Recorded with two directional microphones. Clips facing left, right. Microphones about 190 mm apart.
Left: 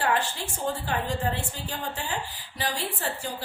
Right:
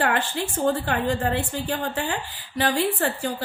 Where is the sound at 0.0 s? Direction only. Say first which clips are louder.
Right 3 dB; 60° right (ahead or behind).